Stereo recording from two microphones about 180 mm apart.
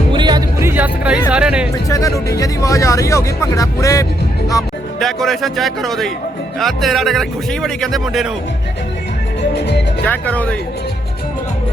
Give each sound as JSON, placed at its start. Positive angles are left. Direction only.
{"t": 0.1, "sound": "music", "side_deg": -25}
{"t": 0.7, "sound": "music", "side_deg": -10}
{"t": 1.3, "sound": "speech", "side_deg": -5}
{"t": 1.9, "sound": "speech", "side_deg": 20}
{"t": 4.9, "sound": "speech", "side_deg": 0}
{"t": 9.4, "sound": "music", "side_deg": 70}
{"t": 10.1, "sound": "speech", "side_deg": 10}